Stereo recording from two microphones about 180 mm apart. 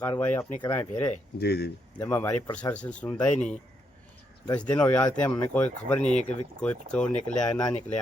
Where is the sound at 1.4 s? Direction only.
60° left (ahead or behind).